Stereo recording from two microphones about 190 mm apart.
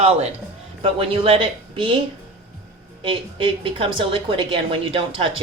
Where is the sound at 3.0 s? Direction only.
25° right (ahead or behind).